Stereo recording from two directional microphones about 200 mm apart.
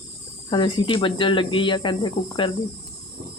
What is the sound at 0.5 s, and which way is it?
Speech, 25° left (ahead or behind).